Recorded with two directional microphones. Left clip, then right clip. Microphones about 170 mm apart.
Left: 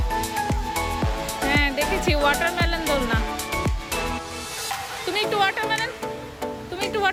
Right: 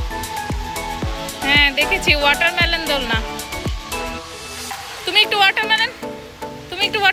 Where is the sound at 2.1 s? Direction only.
15° left (ahead or behind).